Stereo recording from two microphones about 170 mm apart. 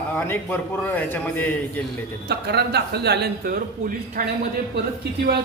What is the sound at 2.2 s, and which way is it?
Speech, 75° right (ahead or behind).